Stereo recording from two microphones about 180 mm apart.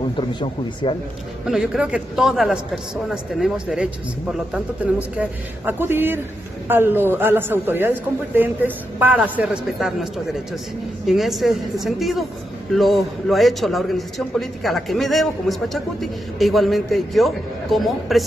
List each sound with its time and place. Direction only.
0.8 s speech: 25° left (ahead or behind)
1.4 s a man's voice: 5° right (ahead or behind)